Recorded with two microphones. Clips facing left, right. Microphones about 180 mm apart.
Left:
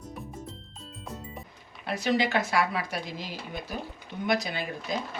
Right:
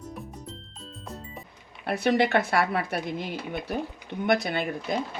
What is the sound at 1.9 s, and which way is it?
Speech, 60° right (ahead or behind).